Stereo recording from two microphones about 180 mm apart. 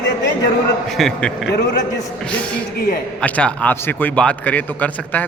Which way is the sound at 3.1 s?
5° left (ahead or behind).